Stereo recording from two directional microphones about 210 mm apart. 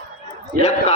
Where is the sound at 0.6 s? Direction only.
35° left (ahead or behind).